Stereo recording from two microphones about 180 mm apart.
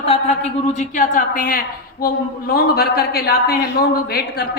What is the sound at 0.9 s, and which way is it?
A woman's voice, 50° left (ahead or behind).